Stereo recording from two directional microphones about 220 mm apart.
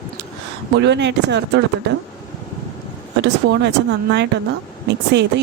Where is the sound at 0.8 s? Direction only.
50° right (ahead or behind).